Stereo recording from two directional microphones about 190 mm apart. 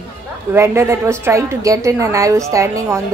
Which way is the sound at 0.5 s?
15° right (ahead or behind).